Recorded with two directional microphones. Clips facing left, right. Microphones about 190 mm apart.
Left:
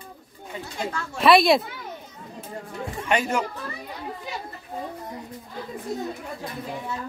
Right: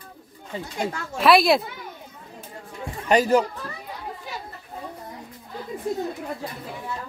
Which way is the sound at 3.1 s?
40° right (ahead or behind).